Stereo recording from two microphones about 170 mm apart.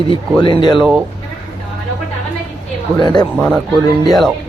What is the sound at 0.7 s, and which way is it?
Speech, 5° right (ahead or behind).